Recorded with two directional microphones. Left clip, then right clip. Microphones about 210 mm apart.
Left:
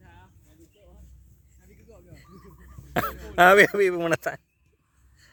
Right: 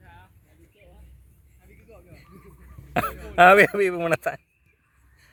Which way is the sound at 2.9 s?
10° left (ahead or behind).